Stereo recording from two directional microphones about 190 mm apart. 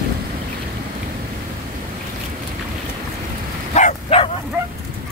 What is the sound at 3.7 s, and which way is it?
Bow-wow, 40° left (ahead or behind).